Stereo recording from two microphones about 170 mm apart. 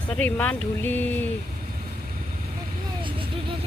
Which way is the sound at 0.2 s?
10° left (ahead or behind).